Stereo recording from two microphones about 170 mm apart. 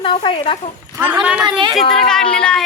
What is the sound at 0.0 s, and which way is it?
Speech, 30° left (ahead or behind).